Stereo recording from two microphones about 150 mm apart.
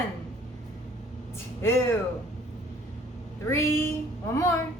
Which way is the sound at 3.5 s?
15° left (ahead or behind).